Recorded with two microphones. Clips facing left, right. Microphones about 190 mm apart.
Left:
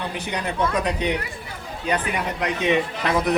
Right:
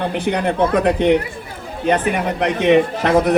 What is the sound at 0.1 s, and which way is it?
Speech, 55° right (ahead or behind).